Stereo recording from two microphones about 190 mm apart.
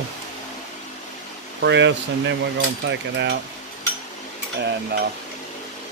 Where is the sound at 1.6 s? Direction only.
70° right (ahead or behind).